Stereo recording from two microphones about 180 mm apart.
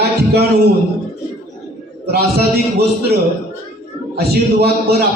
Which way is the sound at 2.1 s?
60° right (ahead or behind).